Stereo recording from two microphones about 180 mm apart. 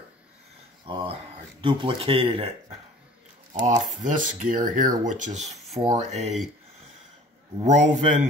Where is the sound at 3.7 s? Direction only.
45° right (ahead or behind).